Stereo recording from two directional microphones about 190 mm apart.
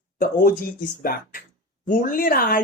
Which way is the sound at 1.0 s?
50° left (ahead or behind).